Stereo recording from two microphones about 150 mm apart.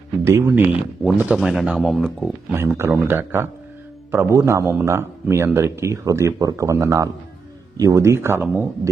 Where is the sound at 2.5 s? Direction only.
15° right (ahead or behind).